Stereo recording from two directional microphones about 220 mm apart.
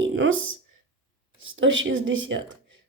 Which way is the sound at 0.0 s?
60° right (ahead or behind).